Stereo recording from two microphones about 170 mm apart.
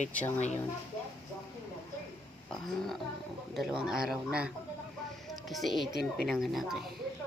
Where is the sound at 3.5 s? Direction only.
5° right (ahead or behind).